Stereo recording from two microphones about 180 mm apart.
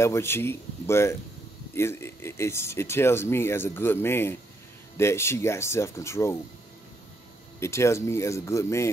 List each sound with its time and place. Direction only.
0.0 s speech: 15° left (ahead or behind)
7.6 s speech: 15° left (ahead or behind)